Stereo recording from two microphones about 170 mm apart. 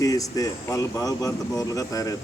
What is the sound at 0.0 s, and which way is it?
Speech, 20° left (ahead or behind).